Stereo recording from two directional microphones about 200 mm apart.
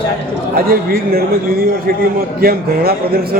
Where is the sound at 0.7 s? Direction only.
50° right (ahead or behind).